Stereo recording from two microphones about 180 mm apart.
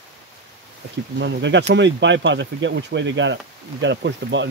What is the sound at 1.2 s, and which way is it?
Speech, 80° right.